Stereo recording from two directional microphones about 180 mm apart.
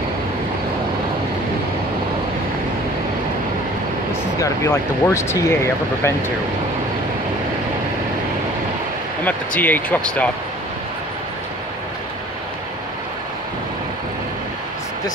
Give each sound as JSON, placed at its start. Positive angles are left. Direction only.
{"t": 4.4, "sound": "speech", "side_deg": 15}
{"t": 9.6, "sound": "speech", "side_deg": 10}